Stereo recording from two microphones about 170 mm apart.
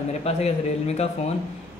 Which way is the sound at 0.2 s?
40° left (ahead or behind).